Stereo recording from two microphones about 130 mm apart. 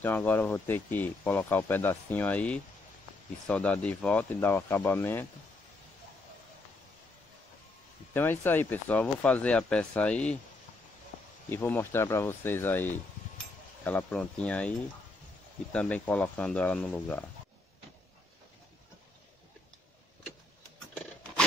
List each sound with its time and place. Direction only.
0.0 s speech: 15° left (ahead or behind)
8.1 s speech: 15° left (ahead or behind)
11.4 s speech: 15° left (ahead or behind)